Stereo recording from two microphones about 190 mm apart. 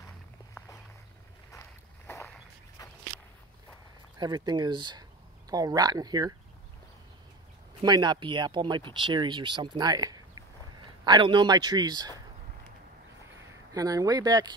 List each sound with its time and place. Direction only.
1.5 s walk: 15° left (ahead or behind)
4.2 s speech: 20° right (ahead or behind)
7.8 s a man's voice: 20° right (ahead or behind)
13.7 s speech: 20° right (ahead or behind)